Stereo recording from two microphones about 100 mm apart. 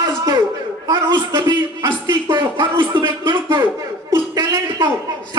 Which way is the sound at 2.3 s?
50° right (ahead or behind).